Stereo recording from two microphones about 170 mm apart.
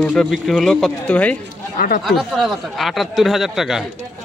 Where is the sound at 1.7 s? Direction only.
60° left (ahead or behind).